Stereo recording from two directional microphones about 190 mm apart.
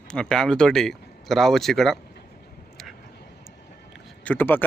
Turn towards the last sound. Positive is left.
turn(degrees=10)  # may be behind; listen again after turning